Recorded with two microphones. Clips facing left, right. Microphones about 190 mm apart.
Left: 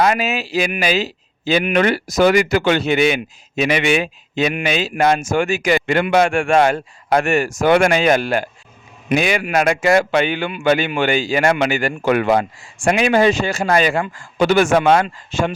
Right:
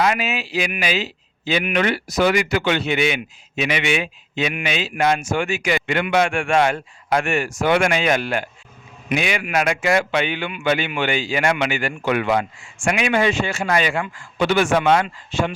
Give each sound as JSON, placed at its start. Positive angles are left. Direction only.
{"t": 0.0, "sound": "a man's voice", "side_deg": 40}